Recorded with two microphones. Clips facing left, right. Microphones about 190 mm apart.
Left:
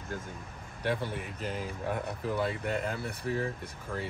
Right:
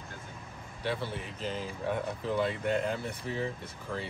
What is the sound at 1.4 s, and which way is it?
Speech, 10° left (ahead or behind).